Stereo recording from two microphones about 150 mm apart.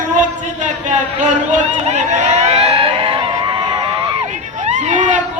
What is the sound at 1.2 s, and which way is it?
Vehicle, 55° right (ahead or behind).